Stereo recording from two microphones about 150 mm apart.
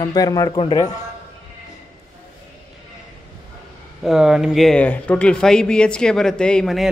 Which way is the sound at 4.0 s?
5° right (ahead or behind).